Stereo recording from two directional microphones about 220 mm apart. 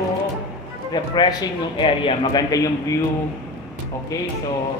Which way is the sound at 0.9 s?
20° left (ahead or behind).